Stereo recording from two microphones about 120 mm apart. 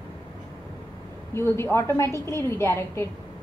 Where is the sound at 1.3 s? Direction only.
20° left (ahead or behind).